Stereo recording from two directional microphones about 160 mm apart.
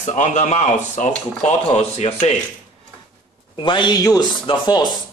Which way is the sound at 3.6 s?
30° left (ahead or behind).